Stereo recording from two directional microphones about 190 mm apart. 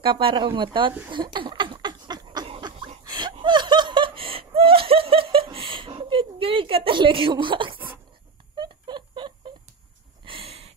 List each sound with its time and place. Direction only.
0.0 s speech: 30° right (ahead or behind)
1.1 s a sound: 25° right (ahead or behind)
10.2 s snort: 30° right (ahead or behind)